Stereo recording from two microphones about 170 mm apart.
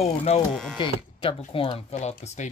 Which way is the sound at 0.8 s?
30° left (ahead or behind).